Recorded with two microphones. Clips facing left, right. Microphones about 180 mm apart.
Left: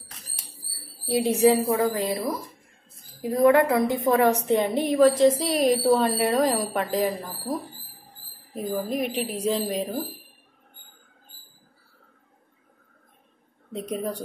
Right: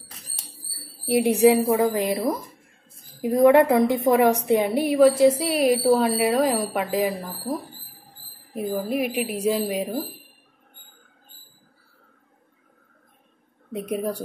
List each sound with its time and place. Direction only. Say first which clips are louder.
1.0 s a woman's voice: right 3 dB; 15° right (ahead or behind)
8.5 s a woman's voice: right 2 dB; 10° right (ahead or behind)
13.7 s a woman's voice: right 3 dB; 10° right (ahead or behind)